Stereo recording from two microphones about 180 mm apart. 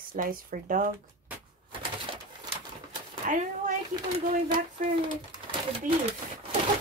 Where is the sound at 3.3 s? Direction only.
45° right (ahead or behind).